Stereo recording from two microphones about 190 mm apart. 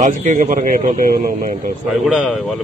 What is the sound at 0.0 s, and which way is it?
Speech, 40° right (ahead or behind).